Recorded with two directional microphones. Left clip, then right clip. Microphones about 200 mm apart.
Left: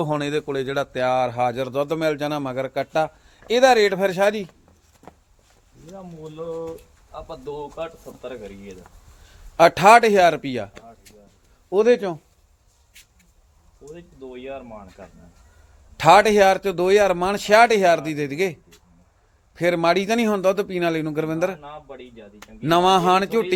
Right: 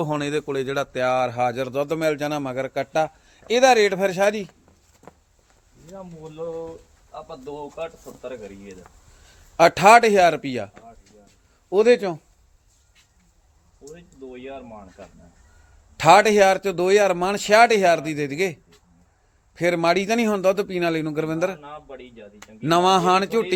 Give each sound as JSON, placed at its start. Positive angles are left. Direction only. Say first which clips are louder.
{"t": 0.0, "sound": "speech", "louder": "left 1 dB", "side_deg": 0}
{"t": 5.0, "sound": "a sound", "louder": "left 1 dB", "side_deg": -10}
{"t": 7.3, "sound": "speech", "louder": "left 3 dB", "side_deg": 25}
{"t": 9.6, "sound": "speech", "louder": "left 1 dB", "side_deg": 0}
{"t": 11.1, "sound": "a sound", "louder": "left 3 dB", "side_deg": 35}
{"t": 11.7, "sound": "a man's voice", "louder": "right 1 dB", "side_deg": -10}
{"t": 13.9, "sound": "speech", "louder": "left 2 dB", "side_deg": 25}
{"t": 16.0, "sound": "speech", "louder": "even", "side_deg": 0}